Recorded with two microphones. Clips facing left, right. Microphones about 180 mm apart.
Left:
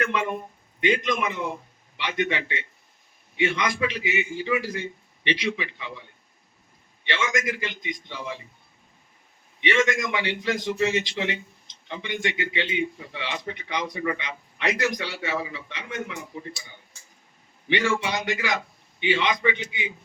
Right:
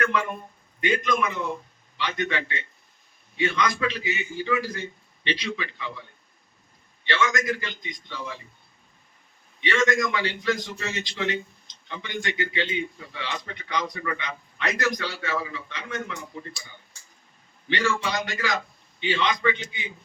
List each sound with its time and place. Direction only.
0.0 s a man's voice: 25° left (ahead or behind)
7.0 s a man's voice: 20° left (ahead or behind)
9.6 s a man's voice: 20° left (ahead or behind)
17.7 s a man's voice: 20° left (ahead or behind)